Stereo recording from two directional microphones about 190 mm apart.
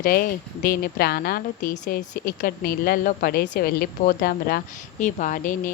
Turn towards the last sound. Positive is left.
turn(degrees=45)  # may be behind; listen again after turning